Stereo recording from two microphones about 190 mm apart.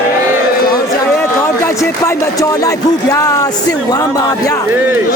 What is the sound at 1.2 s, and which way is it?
A man's voice, 15° left (ahead or behind).